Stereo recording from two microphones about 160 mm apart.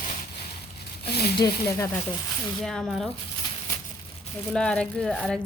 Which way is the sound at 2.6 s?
5° left (ahead or behind).